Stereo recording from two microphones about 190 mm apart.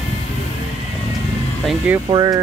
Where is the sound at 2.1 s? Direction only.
20° right (ahead or behind).